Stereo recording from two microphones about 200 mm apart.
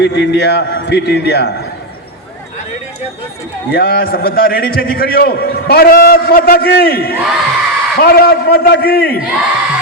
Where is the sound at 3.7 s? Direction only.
50° left (ahead or behind).